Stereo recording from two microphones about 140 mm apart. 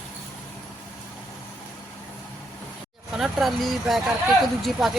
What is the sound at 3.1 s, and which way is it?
A man's voice, centre (ahead or behind).